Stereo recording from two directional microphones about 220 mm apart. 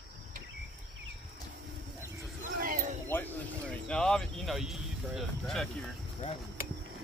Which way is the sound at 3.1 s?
5° left (ahead or behind).